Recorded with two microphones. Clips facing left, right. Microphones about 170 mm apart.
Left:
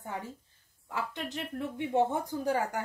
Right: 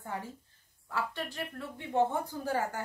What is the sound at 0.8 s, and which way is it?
Speech, 20° left (ahead or behind).